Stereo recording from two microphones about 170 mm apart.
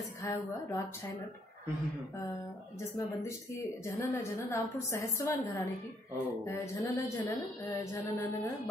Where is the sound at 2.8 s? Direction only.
15° left (ahead or behind).